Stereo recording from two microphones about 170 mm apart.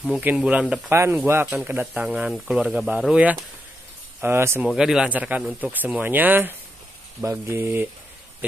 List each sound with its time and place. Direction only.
0.1 s speech: 10° right (ahead or behind)
4.6 s speech: 5° right (ahead or behind)